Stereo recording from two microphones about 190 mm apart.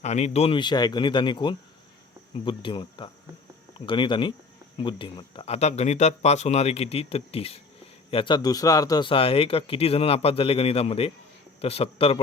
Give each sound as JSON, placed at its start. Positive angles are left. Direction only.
{"t": 0.0, "sound": "speech", "side_deg": 35}